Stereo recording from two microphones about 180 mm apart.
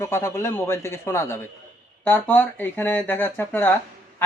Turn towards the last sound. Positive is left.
turn(degrees=10)  # may be behind; listen again after turning